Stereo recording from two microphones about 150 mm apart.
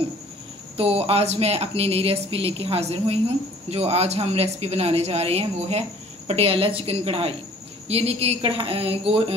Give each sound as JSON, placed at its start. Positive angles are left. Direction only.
{"t": 0.7, "sound": "a woman's voice", "side_deg": -40}